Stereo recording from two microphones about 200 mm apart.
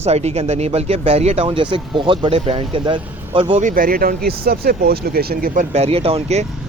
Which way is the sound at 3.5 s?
40° right (ahead or behind).